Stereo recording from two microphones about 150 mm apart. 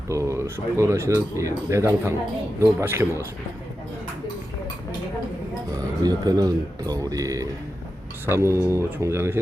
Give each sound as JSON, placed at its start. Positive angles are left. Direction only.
{"t": 0.1, "sound": "speech", "side_deg": -20}
{"t": 5.7, "sound": "speech", "side_deg": -25}